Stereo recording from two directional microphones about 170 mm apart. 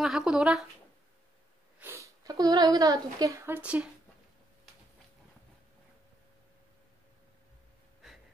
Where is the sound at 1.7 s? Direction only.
15° right (ahead or behind).